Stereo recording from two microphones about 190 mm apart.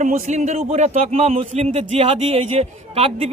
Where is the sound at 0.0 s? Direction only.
40° right (ahead or behind).